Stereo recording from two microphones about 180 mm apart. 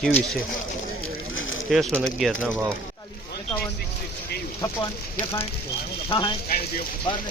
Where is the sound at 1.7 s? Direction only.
Centre (ahead or behind).